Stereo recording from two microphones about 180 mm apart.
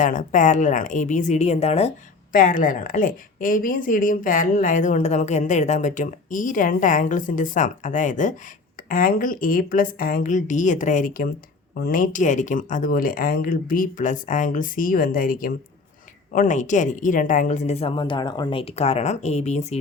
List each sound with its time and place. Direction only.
0.0 s a woman's voice: 45° left (ahead or behind)
2.3 s a woman's voice: 50° left (ahead or behind)